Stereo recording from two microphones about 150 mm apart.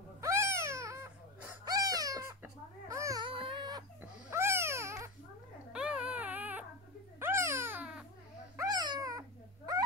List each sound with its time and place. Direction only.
0.2 s crying: 15° right (ahead or behind)
2.4 s babbling: 20° right (ahead or behind)
3.3 s baby cry: 35° right (ahead or behind)
4.3 s babbling: 15° right (ahead or behind)
5.7 s baby cry: 5° right (ahead or behind)
7.2 s babbling: 15° right (ahead or behind)
8.5 s a sound: 25° right (ahead or behind)